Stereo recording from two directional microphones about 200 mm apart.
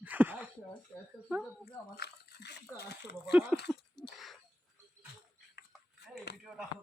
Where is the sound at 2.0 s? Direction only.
55° left (ahead or behind).